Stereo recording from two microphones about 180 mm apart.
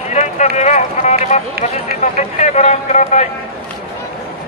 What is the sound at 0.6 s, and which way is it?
A man's voice, 40° left (ahead or behind).